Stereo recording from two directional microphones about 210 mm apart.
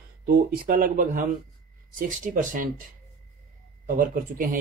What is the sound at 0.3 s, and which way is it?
Speech, 40° right (ahead or behind).